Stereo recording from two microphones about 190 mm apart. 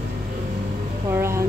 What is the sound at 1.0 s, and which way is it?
Speech, 15° right (ahead or behind).